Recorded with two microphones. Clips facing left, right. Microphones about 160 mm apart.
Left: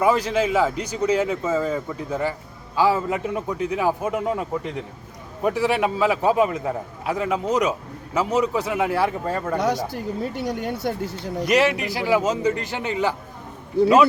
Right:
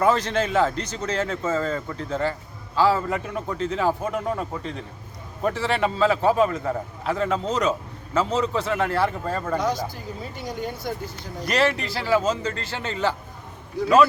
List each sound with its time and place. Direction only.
0.0 s a man's voice: 10° left (ahead or behind)
9.6 s speech: 70° left (ahead or behind)
11.4 s a man's voice: 15° left (ahead or behind)